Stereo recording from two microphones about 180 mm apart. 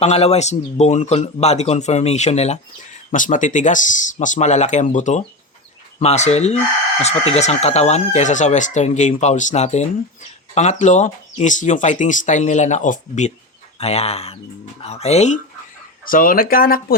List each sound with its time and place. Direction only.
0.0 s speech: 35° left (ahead or behind)
16.0 s speech: 50° left (ahead or behind)